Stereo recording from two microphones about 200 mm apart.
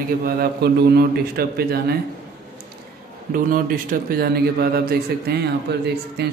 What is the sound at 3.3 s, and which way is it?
A man's voice, 45° right (ahead or behind).